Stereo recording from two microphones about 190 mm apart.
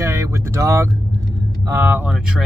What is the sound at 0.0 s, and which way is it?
Vehicle, 15° right (ahead or behind).